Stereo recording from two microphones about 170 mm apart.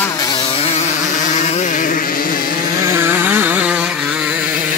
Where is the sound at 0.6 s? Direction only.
45° left (ahead or behind).